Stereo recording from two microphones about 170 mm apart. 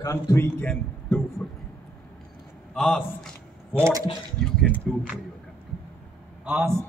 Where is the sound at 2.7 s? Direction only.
Centre (ahead or behind).